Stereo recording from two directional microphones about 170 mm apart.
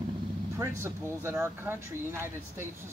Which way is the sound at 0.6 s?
15° right (ahead or behind).